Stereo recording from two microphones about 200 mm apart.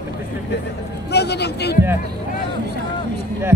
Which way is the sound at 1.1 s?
55° left (ahead or behind).